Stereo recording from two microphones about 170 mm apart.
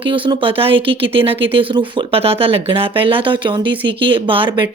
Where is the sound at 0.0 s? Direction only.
30° right (ahead or behind).